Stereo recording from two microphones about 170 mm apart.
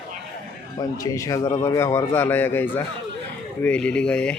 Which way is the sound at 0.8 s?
20° left (ahead or behind).